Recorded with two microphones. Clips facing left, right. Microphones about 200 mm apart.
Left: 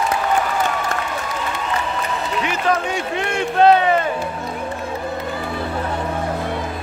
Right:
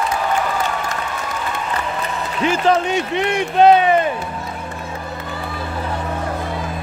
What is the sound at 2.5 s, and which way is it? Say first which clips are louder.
Speech: right 6 dB; 25° right (ahead or behind).